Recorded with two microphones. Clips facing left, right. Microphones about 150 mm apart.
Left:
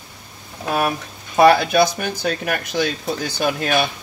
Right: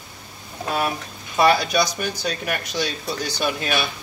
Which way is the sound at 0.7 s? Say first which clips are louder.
Left 4 dB; 55° left (ahead or behind).